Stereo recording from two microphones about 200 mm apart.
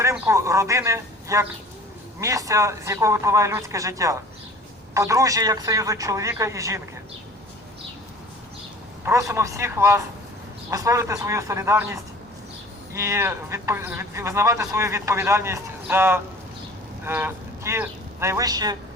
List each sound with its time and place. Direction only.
0.0 s speech: 15° right (ahead or behind)
9.0 s speech: 15° right (ahead or behind)
12.9 s speech: 15° right (ahead or behind)